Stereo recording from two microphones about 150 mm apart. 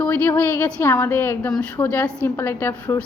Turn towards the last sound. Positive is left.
turn(degrees=10)  # may be behind; listen again after turning